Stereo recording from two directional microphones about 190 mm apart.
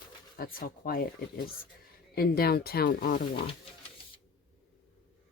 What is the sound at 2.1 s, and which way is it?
Speech, 55° left (ahead or behind).